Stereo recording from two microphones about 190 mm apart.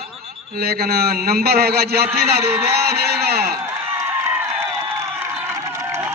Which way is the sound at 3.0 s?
55° right (ahead or behind).